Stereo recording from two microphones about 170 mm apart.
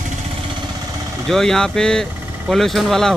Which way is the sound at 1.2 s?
Centre (ahead or behind).